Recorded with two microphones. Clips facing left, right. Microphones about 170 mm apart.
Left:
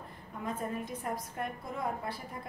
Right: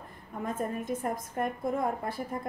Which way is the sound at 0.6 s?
45° right (ahead or behind).